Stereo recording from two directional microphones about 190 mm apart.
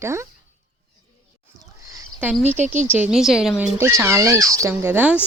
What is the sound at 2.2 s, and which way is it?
Speech, 5° right (ahead or behind).